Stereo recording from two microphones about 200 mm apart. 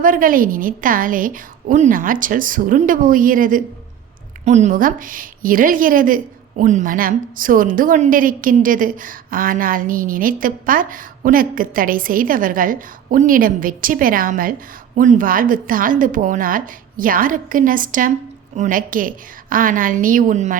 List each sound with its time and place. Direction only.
0.0 s a woman's voice: 45° right (ahead or behind)